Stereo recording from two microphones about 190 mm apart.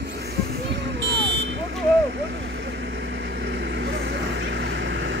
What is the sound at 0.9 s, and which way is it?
Vehicle, 65° right (ahead or behind).